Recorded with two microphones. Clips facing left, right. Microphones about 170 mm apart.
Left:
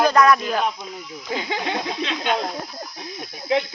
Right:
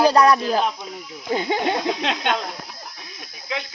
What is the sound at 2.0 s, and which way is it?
Speech, 70° right (ahead or behind).